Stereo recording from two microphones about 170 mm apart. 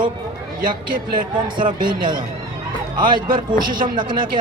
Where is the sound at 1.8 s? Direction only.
25° right (ahead or behind).